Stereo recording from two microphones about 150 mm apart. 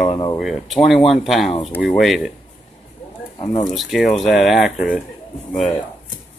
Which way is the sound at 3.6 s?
Centre (ahead or behind).